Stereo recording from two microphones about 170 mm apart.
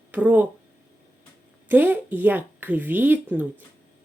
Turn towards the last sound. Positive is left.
turn(degrees=-10)  # may be behind; listen again after turning